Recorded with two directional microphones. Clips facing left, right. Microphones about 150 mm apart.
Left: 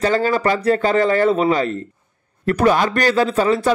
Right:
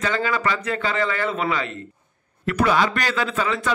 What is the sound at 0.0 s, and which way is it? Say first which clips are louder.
A man's voice: left 6 dB; 40° left (ahead or behind).